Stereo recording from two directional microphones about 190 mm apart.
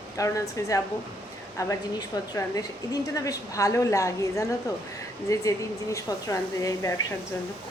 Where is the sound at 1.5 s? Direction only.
15° left (ahead or behind).